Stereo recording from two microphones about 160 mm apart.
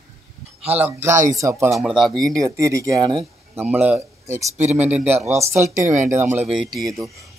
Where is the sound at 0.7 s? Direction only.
10° right (ahead or behind).